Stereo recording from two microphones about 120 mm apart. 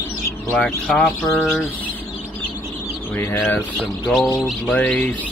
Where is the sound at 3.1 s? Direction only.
20° left (ahead or behind).